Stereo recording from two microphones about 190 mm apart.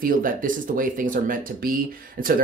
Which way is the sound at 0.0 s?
45° right (ahead or behind).